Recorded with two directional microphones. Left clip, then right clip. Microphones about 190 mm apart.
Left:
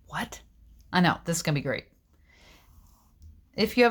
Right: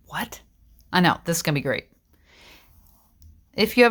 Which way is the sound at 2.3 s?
25° right (ahead or behind).